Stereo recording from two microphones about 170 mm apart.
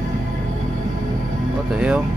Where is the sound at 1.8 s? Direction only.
5° right (ahead or behind).